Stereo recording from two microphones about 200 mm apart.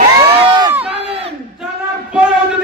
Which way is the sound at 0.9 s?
30° right (ahead or behind).